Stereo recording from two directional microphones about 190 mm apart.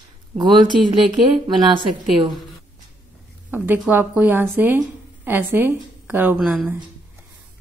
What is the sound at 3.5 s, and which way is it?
A woman's voice, 10° right (ahead or behind).